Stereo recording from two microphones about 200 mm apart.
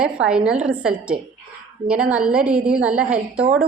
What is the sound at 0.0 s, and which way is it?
A woman's voice, 5° right (ahead or behind).